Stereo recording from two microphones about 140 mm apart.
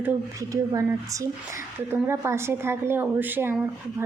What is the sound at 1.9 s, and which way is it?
A woman's voice, 20° right (ahead or behind).